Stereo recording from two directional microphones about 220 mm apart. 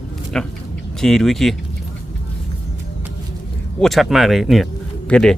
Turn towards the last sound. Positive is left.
turn(degrees=5)  # may be behind; listen again after turning